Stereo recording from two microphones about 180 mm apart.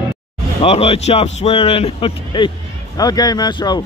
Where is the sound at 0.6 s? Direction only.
35° left (ahead or behind).